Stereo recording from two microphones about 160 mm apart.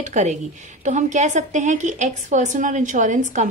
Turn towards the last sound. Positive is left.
turn(degrees=-50)  # may be behind; listen again after turning